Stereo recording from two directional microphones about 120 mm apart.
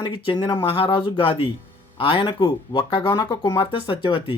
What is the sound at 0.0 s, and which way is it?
Speech, 40° left (ahead or behind).